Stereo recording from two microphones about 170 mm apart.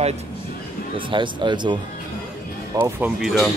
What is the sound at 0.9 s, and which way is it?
Speech, 30° right (ahead or behind).